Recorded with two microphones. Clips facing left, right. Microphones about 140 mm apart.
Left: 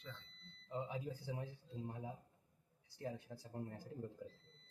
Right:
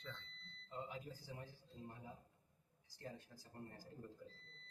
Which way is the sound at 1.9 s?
75° left (ahead or behind).